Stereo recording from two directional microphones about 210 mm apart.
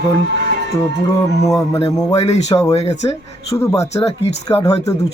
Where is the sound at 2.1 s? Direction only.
30° left (ahead or behind).